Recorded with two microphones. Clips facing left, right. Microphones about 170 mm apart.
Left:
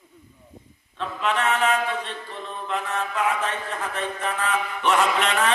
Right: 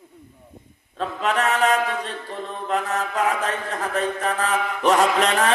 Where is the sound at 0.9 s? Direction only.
40° right (ahead or behind).